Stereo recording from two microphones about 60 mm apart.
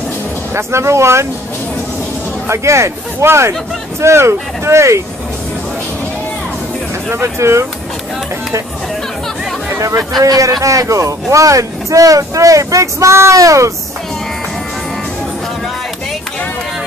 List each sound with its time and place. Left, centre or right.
0.6 s speech: right
2.4 s speech: right
7.1 s speech: right
9.8 s speech: right
10.2 s speech: right
10.6 s speech: right